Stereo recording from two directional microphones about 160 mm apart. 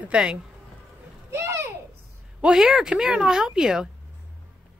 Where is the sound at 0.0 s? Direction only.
5° right (ahead or behind).